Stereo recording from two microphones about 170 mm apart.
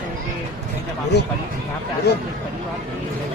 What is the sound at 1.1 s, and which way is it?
Speech, 75° left (ahead or behind).